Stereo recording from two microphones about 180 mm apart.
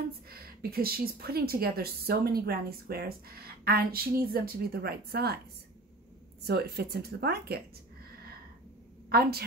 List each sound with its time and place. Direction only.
0.3 s a woman's voice: 55° right (ahead or behind)
6.4 s a woman's voice: 65° right (ahead or behind)
9.1 s a woman's voice: 60° right (ahead or behind)